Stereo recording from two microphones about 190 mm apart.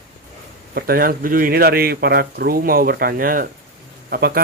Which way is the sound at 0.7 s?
55° right (ahead or behind).